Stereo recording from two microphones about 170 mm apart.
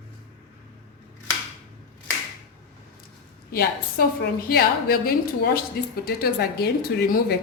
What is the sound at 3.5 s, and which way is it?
A woman's voice, 70° left (ahead or behind).